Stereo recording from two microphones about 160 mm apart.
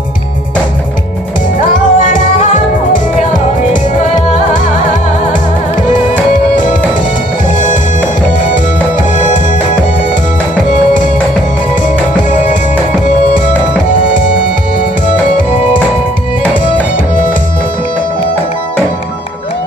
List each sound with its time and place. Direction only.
1.6 s music: 55° left (ahead or behind)
5.3 s music: 55° left (ahead or behind)
8.5 s music: 55° left (ahead or behind)
11.7 s music: 55° left (ahead or behind)
17.1 s music: 55° left (ahead or behind)